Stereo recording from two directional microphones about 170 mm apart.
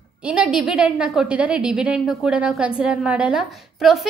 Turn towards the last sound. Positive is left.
turn(degrees=0)  # may be behind; listen again after turning